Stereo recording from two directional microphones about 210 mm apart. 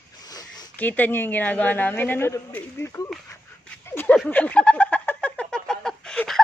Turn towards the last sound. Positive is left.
turn(degrees=5)  # may be behind; listen again after turning